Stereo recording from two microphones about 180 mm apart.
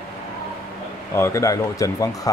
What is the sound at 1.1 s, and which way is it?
Speech, 15° left (ahead or behind).